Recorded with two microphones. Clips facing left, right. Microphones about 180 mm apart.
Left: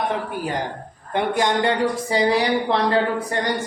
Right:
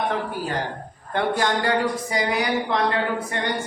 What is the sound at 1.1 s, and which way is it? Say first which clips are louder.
Speech: left 2 dB; 20° left (ahead or behind).